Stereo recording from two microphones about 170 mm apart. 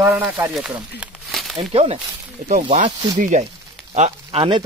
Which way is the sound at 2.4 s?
50° right (ahead or behind).